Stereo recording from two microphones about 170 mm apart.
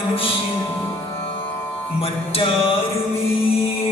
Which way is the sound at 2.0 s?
35° left (ahead or behind).